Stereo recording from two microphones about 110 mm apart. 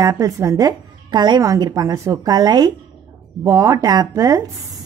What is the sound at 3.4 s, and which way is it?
A woman's voice, 25° right (ahead or behind).